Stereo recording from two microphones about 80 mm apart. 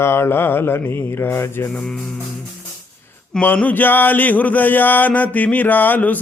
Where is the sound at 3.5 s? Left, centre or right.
Left.